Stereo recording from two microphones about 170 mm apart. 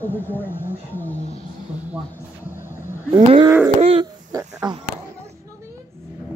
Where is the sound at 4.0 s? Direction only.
20° right (ahead or behind).